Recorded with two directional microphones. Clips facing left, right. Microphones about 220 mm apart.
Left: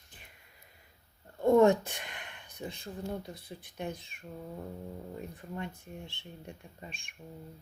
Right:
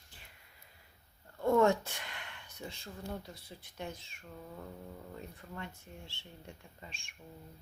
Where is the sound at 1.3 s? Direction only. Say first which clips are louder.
Left 5 dB; 20° left (ahead or behind).